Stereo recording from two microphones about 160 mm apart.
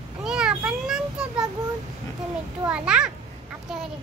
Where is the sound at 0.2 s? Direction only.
5° right (ahead or behind).